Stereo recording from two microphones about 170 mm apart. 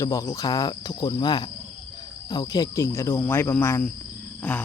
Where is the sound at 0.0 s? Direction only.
20° left (ahead or behind).